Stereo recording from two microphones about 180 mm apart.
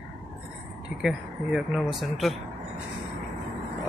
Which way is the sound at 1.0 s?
5° right (ahead or behind).